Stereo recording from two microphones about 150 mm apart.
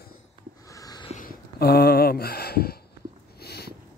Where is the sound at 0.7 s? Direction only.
25° left (ahead or behind).